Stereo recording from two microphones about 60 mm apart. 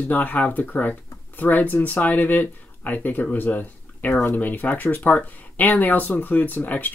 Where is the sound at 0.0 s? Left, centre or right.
Left.